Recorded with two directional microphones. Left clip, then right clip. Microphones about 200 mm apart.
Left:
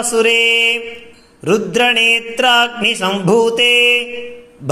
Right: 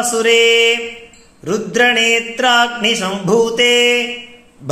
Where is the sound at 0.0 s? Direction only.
25° left (ahead or behind).